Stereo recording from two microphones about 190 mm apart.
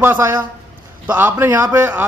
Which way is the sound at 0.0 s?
10° right (ahead or behind).